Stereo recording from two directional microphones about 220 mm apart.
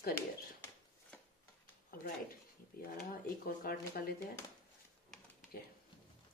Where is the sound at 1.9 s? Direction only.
40° left (ahead or behind).